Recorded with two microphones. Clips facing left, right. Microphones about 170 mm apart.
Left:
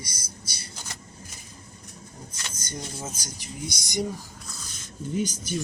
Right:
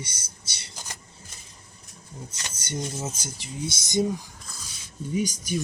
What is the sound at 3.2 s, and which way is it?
Speech, 25° right (ahead or behind).